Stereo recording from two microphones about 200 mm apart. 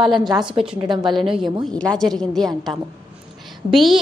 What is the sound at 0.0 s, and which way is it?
A woman's voice, centre (ahead or behind).